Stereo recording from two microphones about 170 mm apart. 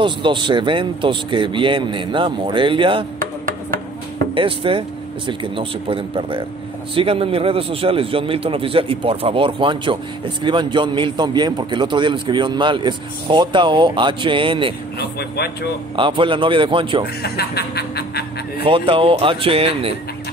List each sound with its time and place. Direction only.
0.0 s a man's voice: 30° right (ahead or behind)
4.4 s a man's voice: 30° right (ahead or behind)
15.0 s music: 70° left (ahead or behind)
16.0 s a man's voice: 30° right (ahead or behind)
17.2 s music: 65° left (ahead or behind)
18.6 s speech: 30° right (ahead or behind)